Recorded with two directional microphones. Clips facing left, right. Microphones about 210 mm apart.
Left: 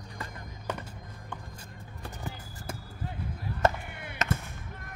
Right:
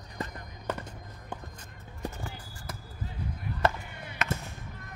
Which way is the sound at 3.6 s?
45° left (ahead or behind).